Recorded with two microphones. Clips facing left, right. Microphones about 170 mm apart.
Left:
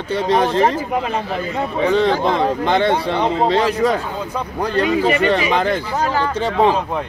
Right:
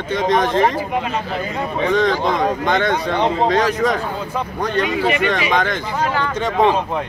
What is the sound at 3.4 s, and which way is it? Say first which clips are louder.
A man's voice: left 1 dB; 30° left (ahead or behind).